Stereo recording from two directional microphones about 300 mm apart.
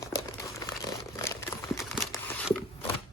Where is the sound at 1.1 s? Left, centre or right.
Centre.